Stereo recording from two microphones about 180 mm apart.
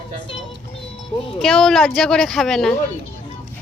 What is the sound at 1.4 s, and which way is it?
Speech, 5° left (ahead or behind).